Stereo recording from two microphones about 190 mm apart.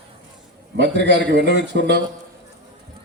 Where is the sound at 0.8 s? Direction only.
70° right (ahead or behind).